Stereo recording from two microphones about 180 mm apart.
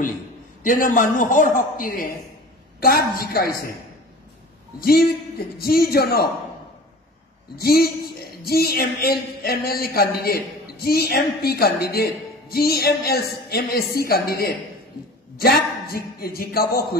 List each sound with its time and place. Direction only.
0.7 s a man's voice: 45° left (ahead or behind)
4.7 s speech: 55° left (ahead or behind)
7.5 s speech: 60° left (ahead or behind)
15.9 s speech: 55° left (ahead or behind)